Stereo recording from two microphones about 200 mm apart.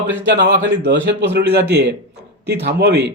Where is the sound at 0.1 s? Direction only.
65° right (ahead or behind).